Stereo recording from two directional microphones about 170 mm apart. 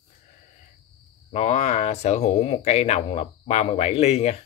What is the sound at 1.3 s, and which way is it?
Speech, 40° left (ahead or behind).